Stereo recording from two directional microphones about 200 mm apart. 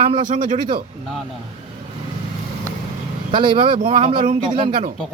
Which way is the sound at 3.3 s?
25° right (ahead or behind).